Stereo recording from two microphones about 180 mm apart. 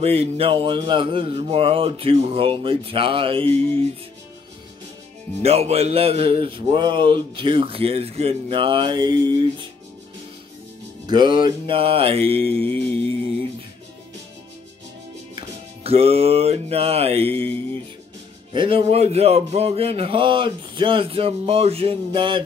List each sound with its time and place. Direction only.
0.0 s speech: 35° right (ahead or behind)
5.4 s speech: 35° right (ahead or behind)
11.1 s speech: 25° right (ahead or behind)
15.3 s music: 35° right (ahead or behind)
18.5 s speech: 30° right (ahead or behind)